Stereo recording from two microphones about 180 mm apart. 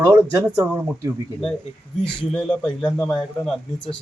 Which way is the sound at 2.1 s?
5° left (ahead or behind).